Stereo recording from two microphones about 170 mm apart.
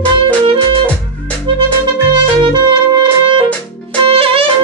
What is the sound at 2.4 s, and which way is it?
Music, 25° right (ahead or behind).